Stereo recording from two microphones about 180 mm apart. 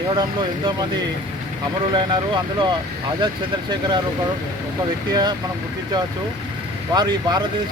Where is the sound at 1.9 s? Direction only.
25° right (ahead or behind).